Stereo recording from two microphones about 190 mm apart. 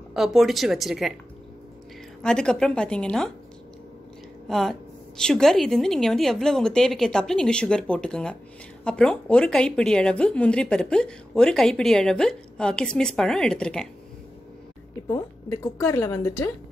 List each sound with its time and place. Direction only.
0.1 s a woman's voice: centre (ahead or behind)
2.2 s a woman's voice: 5° left (ahead or behind)
4.5 s a woman's voice: centre (ahead or behind)
15.0 s a woman's voice: 15° left (ahead or behind)